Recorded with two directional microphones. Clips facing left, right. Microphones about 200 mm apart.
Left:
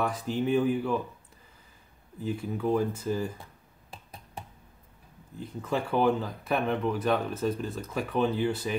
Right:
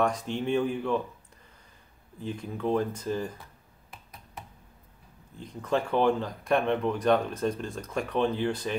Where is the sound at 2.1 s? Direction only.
5° left (ahead or behind).